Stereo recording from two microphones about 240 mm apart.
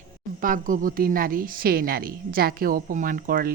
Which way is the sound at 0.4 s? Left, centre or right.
Right.